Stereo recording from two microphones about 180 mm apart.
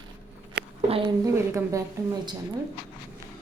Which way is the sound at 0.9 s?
30° right (ahead or behind).